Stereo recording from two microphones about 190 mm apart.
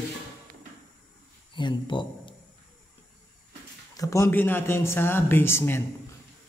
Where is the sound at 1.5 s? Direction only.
25° left (ahead or behind).